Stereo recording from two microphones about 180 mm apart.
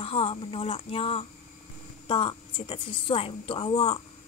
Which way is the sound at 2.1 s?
30° left (ahead or behind).